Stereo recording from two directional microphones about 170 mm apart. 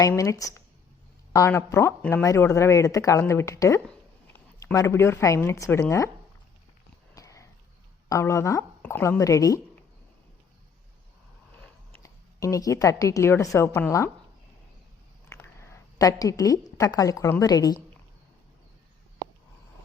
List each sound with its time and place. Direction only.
0.2 s a woman's voice: 20° left (ahead or behind)
7.1 s a sound: 20° left (ahead or behind)
8.1 s speech: 15° left (ahead or behind)
12.0 s a woman's voice: 20° left (ahead or behind)
15.3 s a sound: 15° left (ahead or behind)
16.7 s a woman's voice: 20° left (ahead or behind)